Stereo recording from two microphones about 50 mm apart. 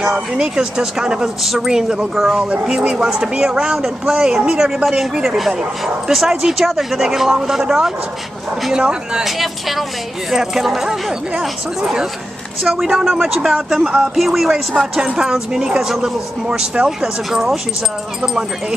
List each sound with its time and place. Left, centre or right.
0.0 s speech: centre
1.4 s speech: centre
9.2 s speech: centre